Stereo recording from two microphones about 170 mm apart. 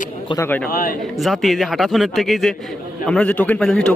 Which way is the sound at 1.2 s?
Centre (ahead or behind).